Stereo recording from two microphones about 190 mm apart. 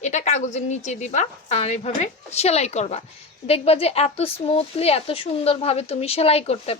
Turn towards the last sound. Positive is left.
turn(degrees=35)  # may be behind; listen again after turning